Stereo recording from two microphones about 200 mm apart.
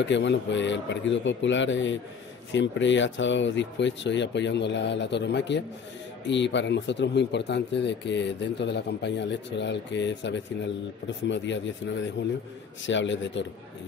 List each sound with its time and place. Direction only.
0.0 s speech: 65° left (ahead or behind)